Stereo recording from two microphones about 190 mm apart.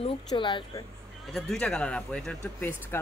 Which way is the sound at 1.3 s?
5° left (ahead or behind).